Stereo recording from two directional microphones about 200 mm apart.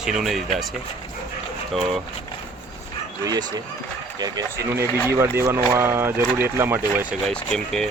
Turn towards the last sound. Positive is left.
turn(degrees=5)  # may be behind; listen again after turning